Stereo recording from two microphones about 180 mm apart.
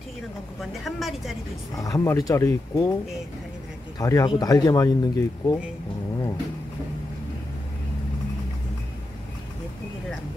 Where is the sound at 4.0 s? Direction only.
20° left (ahead or behind).